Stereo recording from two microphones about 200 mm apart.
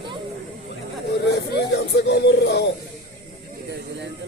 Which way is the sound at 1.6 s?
55° left (ahead or behind).